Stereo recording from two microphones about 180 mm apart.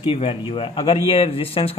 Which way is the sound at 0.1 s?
30° left (ahead or behind).